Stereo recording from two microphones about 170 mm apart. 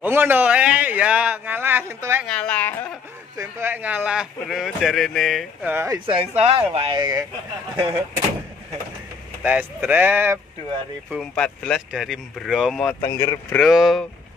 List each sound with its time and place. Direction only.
0.0 s a sound: 10° right (ahead or behind)
2.2 s speech: 5° left (ahead or behind)
3.3 s speech: 15° right (ahead or behind); by 5.7 s centre (ahead or behind)
5.7 s speech: 15° right (ahead or behind)
6.0 s speech: 35° right (ahead or behind)
9.4 s speech: 10° right (ahead or behind)
11.1 s speech: centre (ahead or behind)
13.0 s speech: 30° left (ahead or behind)
13.5 s speech: centre (ahead or behind)